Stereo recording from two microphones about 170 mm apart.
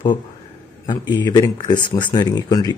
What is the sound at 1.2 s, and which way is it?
Speech, 25° left (ahead or behind).